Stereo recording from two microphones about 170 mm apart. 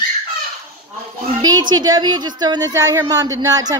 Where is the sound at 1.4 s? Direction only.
25° right (ahead or behind).